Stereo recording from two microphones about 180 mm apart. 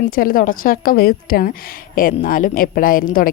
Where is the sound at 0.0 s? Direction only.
55° left (ahead or behind).